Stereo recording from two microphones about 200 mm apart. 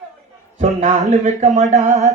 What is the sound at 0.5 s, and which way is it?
A man's voice, 35° right (ahead or behind).